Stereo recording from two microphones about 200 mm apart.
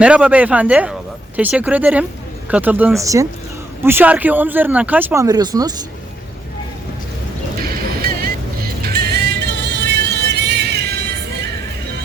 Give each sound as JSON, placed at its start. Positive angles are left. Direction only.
{"t": 0.0, "sound": "speech", "side_deg": -5}
{"t": 7.6, "sound": "music", "side_deg": -50}